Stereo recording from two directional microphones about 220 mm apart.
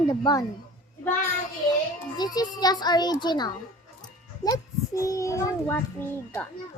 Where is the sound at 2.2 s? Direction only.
20° left (ahead or behind).